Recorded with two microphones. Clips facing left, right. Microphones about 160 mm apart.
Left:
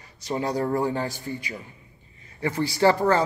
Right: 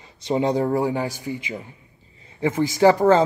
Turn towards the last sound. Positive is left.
turn(degrees=-20)  # may be behind; listen again after turning